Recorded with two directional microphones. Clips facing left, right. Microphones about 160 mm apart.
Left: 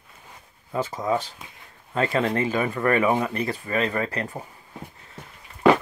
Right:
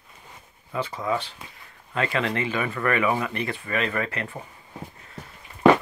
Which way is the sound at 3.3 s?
40° left (ahead or behind).